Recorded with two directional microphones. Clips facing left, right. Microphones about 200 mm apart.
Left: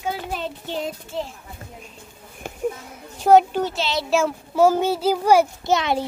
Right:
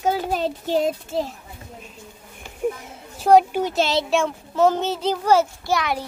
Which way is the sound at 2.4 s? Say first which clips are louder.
Left 9 dB; 50° left (ahead or behind).